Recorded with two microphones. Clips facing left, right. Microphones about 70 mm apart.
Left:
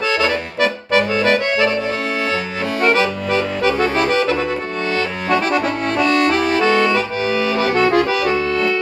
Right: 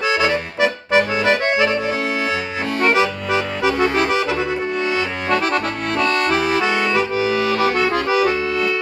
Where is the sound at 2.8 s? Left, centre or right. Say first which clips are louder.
Left 1 dB; centre.